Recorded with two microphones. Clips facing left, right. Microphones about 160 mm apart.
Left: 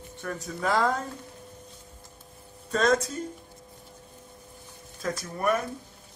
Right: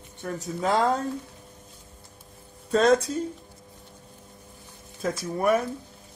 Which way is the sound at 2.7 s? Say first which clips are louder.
Right 4 dB; 30° right (ahead or behind).